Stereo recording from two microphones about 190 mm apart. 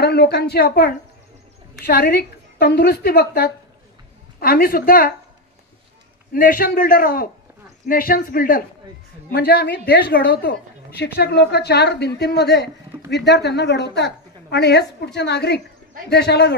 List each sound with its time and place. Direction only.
0.0 s a woman's voice: 55° left (ahead or behind)
6.3 s a man's voice: 50° left (ahead or behind)